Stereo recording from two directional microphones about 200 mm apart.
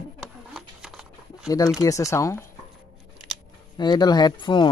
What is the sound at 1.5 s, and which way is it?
Speech, 15° left (ahead or behind).